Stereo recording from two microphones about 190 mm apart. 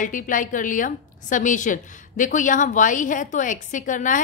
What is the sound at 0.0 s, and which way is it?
A woman's voice, 45° left (ahead or behind).